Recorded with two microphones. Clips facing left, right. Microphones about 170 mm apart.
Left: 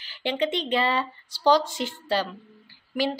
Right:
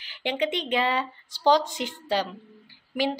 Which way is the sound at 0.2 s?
15° right (ahead or behind).